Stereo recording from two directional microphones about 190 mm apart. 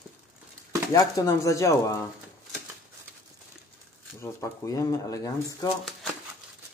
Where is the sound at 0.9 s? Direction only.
20° left (ahead or behind).